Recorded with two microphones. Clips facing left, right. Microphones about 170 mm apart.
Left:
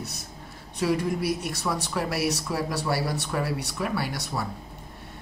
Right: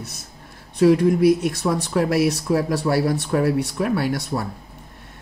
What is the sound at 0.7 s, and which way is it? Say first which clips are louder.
Speech: right 10 dB; 55° right (ahead or behind).